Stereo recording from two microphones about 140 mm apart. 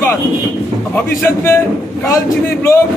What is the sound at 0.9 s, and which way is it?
A man's voice, 20° left (ahead or behind).